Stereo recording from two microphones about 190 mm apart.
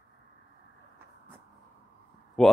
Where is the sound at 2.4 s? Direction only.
Centre (ahead or behind).